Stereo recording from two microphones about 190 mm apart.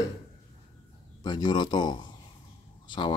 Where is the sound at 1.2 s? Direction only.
25° left (ahead or behind).